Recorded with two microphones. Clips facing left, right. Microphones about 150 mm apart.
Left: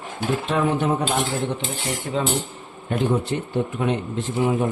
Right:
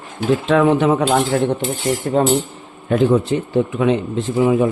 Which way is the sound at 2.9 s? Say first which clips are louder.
Right 8 dB; 90° right.